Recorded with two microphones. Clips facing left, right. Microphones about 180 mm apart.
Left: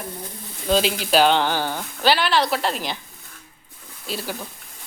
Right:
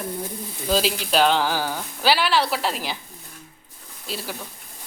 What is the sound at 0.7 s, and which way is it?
Speech, centre (ahead or behind).